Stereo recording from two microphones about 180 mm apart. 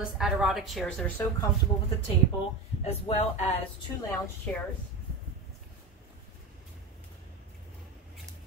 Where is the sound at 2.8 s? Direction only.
35° left (ahead or behind).